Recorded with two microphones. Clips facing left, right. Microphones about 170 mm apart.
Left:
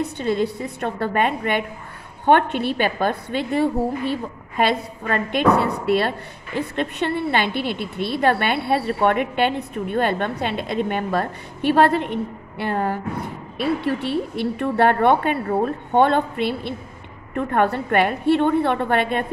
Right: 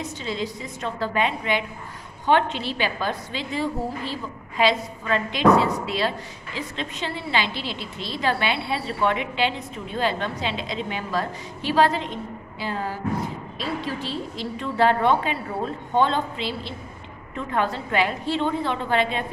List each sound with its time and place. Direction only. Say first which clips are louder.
0.0 s a woman's voice: left 7 dB; 55° left (ahead or behind)